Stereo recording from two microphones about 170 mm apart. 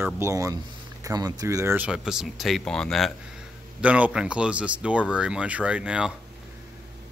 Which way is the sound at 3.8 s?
5° right (ahead or behind).